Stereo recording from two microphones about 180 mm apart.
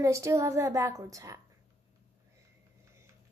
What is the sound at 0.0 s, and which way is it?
A woman's voice, 15° right (ahead or behind).